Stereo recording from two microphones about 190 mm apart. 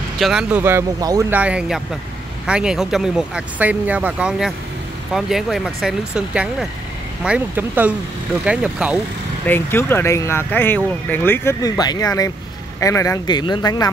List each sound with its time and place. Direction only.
0.2 s speech: 5° right (ahead or behind)
1.4 s speech: 5° right (ahead or behind)
9.5 s speech: 10° left (ahead or behind)